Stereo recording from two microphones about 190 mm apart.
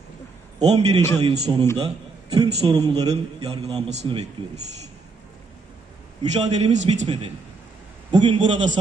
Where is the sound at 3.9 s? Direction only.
35° right (ahead or behind).